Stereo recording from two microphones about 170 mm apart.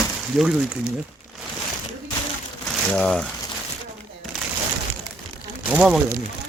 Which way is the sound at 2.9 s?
5° left (ahead or behind).